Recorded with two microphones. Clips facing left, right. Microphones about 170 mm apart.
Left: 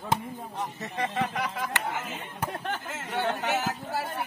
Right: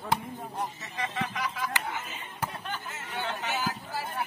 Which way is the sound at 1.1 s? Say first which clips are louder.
Left 2 dB; 55° left (ahead or behind).